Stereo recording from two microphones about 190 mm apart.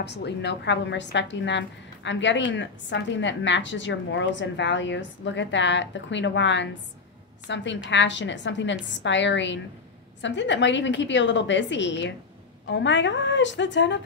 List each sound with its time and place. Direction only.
0.0 s a woman's voice: 60° left (ahead or behind)